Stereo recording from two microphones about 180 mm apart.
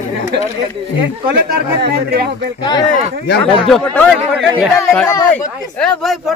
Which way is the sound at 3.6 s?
5° left (ahead or behind).